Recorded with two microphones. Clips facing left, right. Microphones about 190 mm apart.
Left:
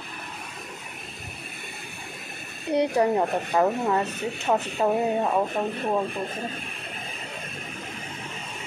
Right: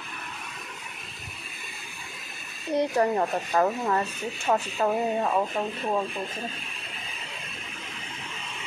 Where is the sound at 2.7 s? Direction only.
15° left (ahead or behind).